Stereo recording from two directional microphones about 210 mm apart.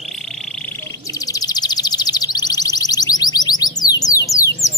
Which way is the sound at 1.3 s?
20° left (ahead or behind).